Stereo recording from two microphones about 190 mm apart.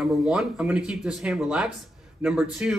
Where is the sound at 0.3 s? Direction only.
5° right (ahead or behind).